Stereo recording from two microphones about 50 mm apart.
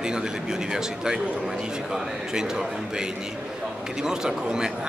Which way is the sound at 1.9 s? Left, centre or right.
Centre.